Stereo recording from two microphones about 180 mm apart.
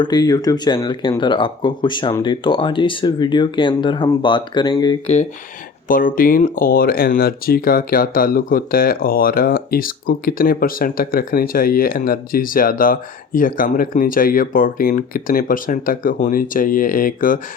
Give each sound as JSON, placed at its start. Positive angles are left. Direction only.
{"t": 0.0, "sound": "speech", "side_deg": 20}
{"t": 5.9, "sound": "speech", "side_deg": 50}